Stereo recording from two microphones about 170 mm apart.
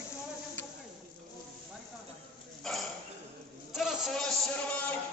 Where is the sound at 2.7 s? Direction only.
Centre (ahead or behind).